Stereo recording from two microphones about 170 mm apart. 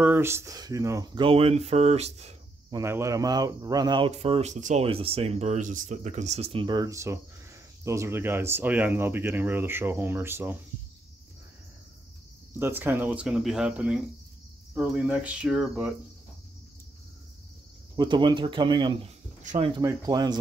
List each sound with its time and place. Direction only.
0.0 s speech: 15° right (ahead or behind); by 2.3 s 40° right (ahead or behind)
2.7 s speech: 15° right (ahead or behind)
4.1 s speech: 40° right (ahead or behind); by 10.6 s 15° right (ahead or behind)
12.5 s speech: 15° right (ahead or behind)
17.9 s speech: 25° right (ahead or behind)
19.4 s speech: 45° right (ahead or behind)
19.7 s speech: 20° right (ahead or behind)